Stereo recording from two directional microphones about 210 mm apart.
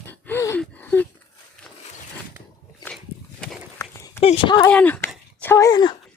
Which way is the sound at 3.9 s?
15° left (ahead or behind).